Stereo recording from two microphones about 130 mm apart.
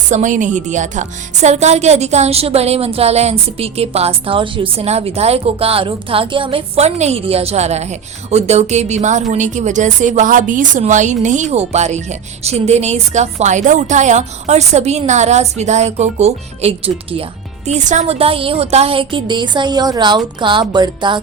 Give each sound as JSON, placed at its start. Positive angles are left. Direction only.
{"t": 0.1, "sound": "speech", "side_deg": -70}
{"t": 17.7, "sound": "a woman's voice", "side_deg": -65}